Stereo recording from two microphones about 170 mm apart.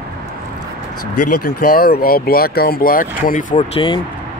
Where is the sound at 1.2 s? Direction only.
60° left (ahead or behind).